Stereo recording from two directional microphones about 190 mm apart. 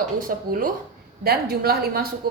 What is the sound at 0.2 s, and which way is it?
A woman's voice, 50° right (ahead or behind).